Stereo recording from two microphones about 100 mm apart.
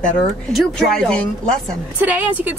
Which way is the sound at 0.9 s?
5° left (ahead or behind).